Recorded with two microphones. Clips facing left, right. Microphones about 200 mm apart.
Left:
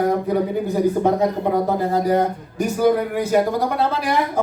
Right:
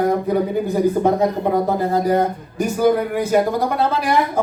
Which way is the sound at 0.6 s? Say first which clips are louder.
Right 1 dB; 50° right (ahead or behind).